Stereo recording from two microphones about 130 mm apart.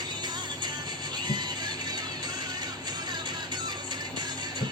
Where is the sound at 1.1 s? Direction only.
35° right (ahead or behind).